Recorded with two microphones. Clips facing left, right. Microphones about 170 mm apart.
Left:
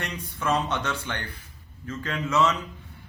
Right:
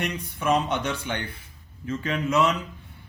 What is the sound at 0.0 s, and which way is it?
Speech, 15° right (ahead or behind).